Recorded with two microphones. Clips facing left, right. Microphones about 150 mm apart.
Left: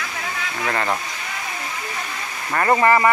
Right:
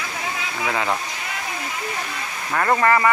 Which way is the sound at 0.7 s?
5° right (ahead or behind).